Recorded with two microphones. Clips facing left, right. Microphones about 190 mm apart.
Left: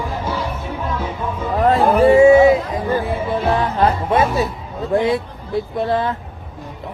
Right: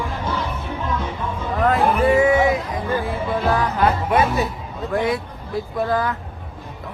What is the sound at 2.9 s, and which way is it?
Music, 20° left (ahead or behind).